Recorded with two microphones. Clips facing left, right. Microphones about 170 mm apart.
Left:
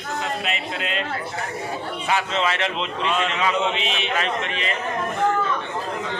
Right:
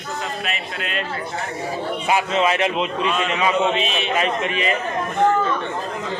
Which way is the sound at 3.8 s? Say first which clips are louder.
Right 3 dB; 20° left (ahead or behind).